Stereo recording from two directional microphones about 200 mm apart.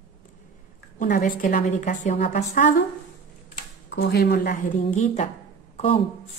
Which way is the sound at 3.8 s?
60° left (ahead or behind).